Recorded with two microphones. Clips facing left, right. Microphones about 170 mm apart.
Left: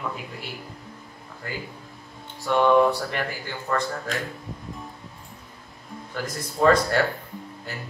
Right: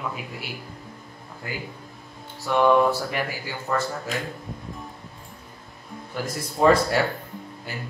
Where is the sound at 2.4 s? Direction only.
5° right (ahead or behind).